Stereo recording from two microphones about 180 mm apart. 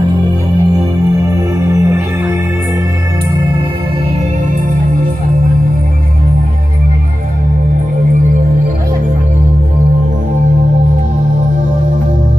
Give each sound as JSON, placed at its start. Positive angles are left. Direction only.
{"t": 1.7, "sound": "music", "side_deg": -15}